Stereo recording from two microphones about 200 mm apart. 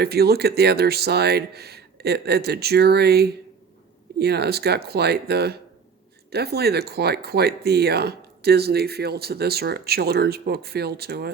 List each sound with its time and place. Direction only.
0.0 s speech: 50° right (ahead or behind)